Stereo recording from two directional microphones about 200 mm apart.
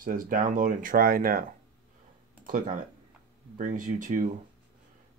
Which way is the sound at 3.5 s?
40° right (ahead or behind).